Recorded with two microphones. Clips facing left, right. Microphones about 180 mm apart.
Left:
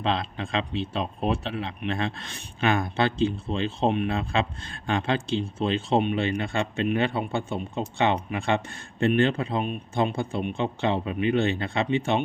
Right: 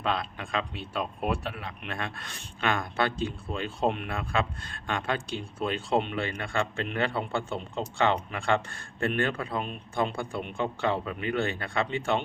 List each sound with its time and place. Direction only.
0.0 s speech: 25° left (ahead or behind)